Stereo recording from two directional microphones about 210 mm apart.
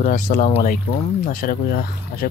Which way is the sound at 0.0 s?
40° left (ahead or behind).